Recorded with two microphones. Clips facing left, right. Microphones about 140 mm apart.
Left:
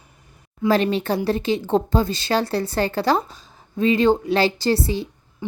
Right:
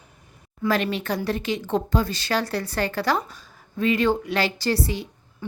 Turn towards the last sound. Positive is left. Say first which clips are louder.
# left 4 dB
turn(degrees=15)  # may be behind; listen again after turning